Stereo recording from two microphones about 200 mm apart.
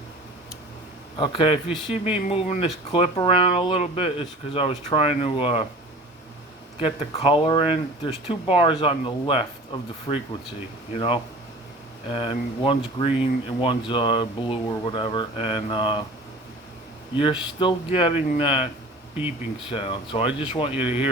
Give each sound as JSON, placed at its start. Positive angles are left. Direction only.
{"t": 1.2, "sound": "speech", "side_deg": 25}
{"t": 6.7, "sound": "speech", "side_deg": 30}
{"t": 17.2, "sound": "speech", "side_deg": 25}
{"t": 19.7, "sound": "speech", "side_deg": 25}
{"t": 20.8, "sound": "speech", "side_deg": -10}